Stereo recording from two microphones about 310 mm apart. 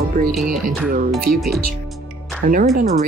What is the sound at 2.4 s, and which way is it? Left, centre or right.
Speech, right.